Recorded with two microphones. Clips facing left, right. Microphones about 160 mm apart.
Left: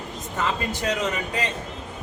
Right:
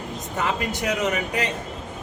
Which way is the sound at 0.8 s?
15° right (ahead or behind).